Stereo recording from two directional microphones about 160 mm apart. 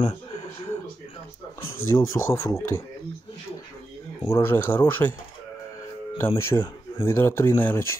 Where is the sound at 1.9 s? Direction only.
15° left (ahead or behind).